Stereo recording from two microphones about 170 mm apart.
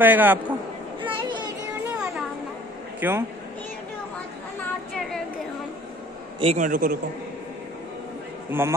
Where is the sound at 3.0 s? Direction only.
10° right (ahead or behind).